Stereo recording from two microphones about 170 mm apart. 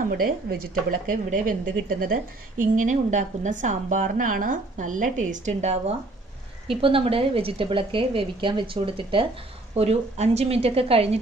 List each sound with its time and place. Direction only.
0.0 s a woman's voice: 60° right (ahead or behind); by 11.1 s 35° right (ahead or behind)